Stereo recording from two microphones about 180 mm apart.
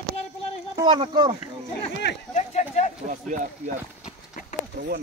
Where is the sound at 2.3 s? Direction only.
40° left (ahead or behind).